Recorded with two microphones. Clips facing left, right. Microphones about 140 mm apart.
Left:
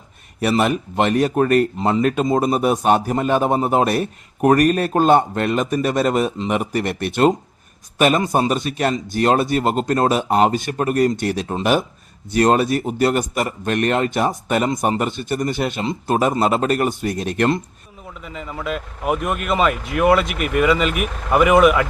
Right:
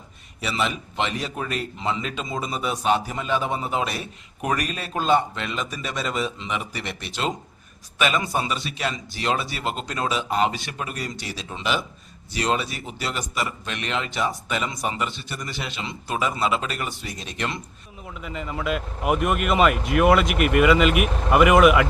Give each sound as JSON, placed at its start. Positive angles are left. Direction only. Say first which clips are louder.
{"t": 0.3, "sound": "speech", "louder": "left 9 dB", "side_deg": 55}
{"t": 18.2, "sound": "speech", "louder": "even", "side_deg": 0}